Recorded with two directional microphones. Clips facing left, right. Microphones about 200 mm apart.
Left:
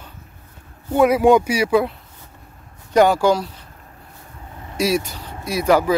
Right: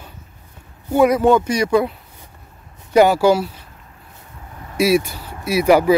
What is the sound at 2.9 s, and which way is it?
Speech, 5° right (ahead or behind).